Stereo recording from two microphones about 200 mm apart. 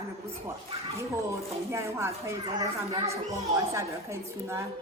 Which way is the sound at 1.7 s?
15° right (ahead or behind).